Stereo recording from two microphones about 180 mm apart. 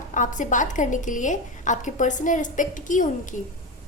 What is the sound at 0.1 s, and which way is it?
A woman's voice, 45° left (ahead or behind).